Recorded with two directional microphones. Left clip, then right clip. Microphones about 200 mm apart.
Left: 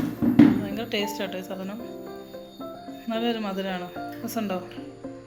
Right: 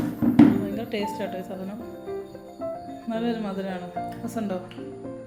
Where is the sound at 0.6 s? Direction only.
Centre (ahead or behind).